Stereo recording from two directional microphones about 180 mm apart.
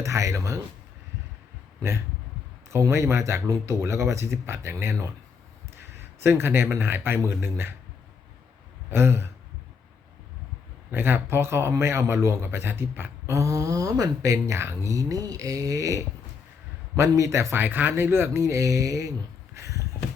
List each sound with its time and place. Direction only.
0.0 s speech: 15° right (ahead or behind)
2.6 s speech: 15° right (ahead or behind)
8.9 s speech: 15° right (ahead or behind)
10.9 s speech: 10° right (ahead or behind)
19.5 s a sound: 15° right (ahead or behind)